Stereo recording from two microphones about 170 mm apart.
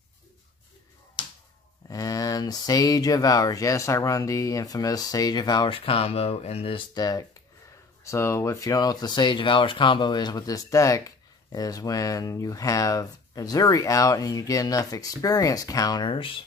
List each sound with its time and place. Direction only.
1.9 s speech: 20° left (ahead or behind)